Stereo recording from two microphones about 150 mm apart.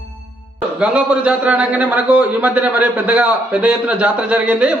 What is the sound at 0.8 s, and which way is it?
A man's voice, 10° right (ahead or behind).